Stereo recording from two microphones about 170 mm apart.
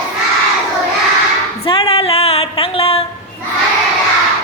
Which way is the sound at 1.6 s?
30° left (ahead or behind).